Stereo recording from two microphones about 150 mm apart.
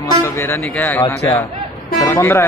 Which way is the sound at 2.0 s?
20° left (ahead or behind).